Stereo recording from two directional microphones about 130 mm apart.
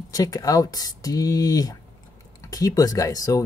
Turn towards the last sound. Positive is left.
turn(degrees=25)  # may be behind; listen again after turning